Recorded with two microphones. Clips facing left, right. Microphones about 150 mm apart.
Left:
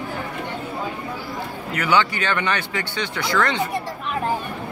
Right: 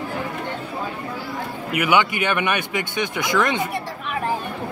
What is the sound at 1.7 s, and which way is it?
Speech, 15° right (ahead or behind).